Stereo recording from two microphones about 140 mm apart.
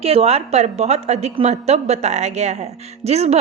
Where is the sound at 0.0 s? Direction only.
45° right (ahead or behind).